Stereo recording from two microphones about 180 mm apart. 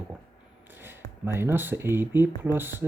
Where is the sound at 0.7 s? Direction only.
10° right (ahead or behind).